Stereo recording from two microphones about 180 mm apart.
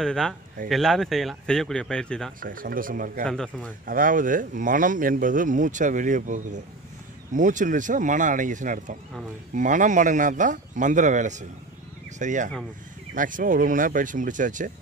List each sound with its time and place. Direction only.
0.0 s speech: 5° left (ahead or behind)
2.4 s speech: 50° right (ahead or behind)
3.3 s speech: 5° left (ahead or behind)
3.8 s speech: 50° right (ahead or behind)